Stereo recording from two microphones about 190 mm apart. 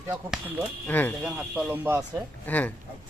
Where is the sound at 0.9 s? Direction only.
10° left (ahead or behind).